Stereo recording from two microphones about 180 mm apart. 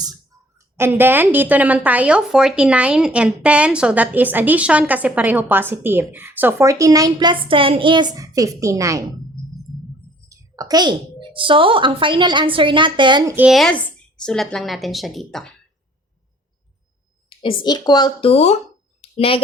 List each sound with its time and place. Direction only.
0.8 s a woman's voice: 10° right (ahead or behind)
10.2 s a woman's voice: 20° right (ahead or behind)
13.3 s a woman's voice: 5° right (ahead or behind)
17.2 s speech: 30° left (ahead or behind)